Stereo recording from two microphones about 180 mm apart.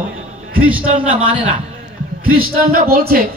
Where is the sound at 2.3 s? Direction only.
55° right (ahead or behind).